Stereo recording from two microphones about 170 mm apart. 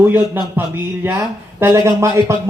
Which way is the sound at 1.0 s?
10° right (ahead or behind).